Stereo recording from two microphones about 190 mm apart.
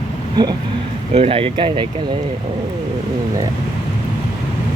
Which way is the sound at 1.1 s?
30° right (ahead or behind).